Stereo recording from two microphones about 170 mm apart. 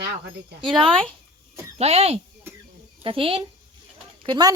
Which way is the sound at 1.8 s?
40° right (ahead or behind).